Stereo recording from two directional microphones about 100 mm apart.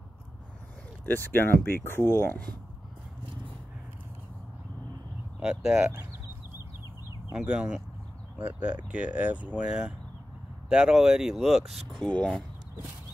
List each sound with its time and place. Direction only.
1.0 s speech: 20° left (ahead or behind)
5.4 s speech: 5° right (ahead or behind)
7.3 s speech: 10° right (ahead or behind)
8.8 s speech: 15° right (ahead or behind)
11.9 s speech: 10° left (ahead or behind)